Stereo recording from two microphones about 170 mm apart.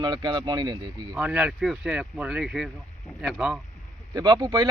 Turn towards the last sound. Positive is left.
turn(degrees=-25)  # may be behind; listen again after turning